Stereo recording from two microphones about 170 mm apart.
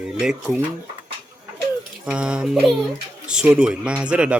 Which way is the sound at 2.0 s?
5° right (ahead or behind).